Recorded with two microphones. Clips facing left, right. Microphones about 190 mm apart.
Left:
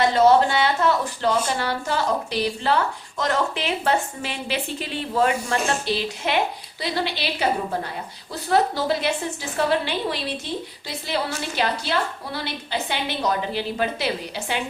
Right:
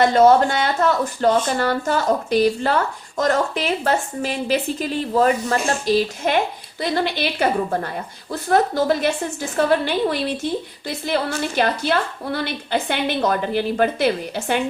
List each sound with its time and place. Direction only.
0.0 s a woman's voice: 50° right (ahead or behind)